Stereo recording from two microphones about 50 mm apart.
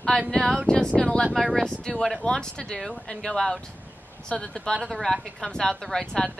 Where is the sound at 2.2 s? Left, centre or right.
Centre.